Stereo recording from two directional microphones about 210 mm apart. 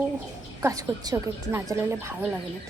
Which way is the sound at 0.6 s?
15° right (ahead or behind).